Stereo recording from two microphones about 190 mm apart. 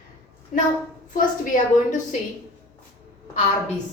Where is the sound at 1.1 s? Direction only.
40° left (ahead or behind).